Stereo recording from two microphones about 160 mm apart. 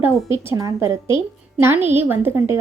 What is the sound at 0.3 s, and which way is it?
A woman's voice, 20° right (ahead or behind).